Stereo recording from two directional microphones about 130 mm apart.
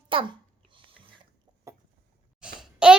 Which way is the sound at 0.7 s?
40° right (ahead or behind).